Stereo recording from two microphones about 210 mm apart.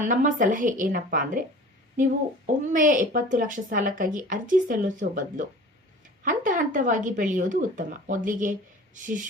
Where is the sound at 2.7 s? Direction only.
40° right (ahead or behind).